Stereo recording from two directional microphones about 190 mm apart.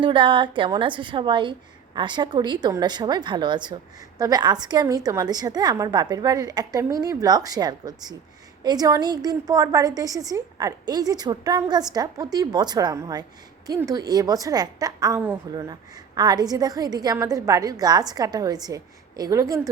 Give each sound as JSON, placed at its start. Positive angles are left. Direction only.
{"t": 0.0, "sound": "a woman's voice", "side_deg": -25}